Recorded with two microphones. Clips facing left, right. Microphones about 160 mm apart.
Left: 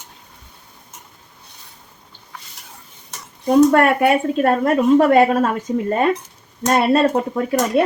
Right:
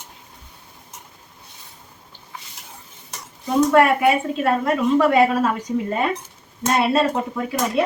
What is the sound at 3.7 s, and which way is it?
A woman's voice, 50° left (ahead or behind).